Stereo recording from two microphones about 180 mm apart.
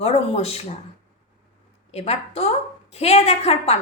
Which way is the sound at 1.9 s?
35° left (ahead or behind).